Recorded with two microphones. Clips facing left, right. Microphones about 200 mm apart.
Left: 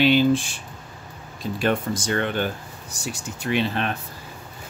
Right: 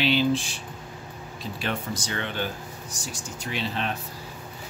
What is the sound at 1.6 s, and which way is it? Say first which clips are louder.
Speech: left 8 dB; 50° left (ahead or behind).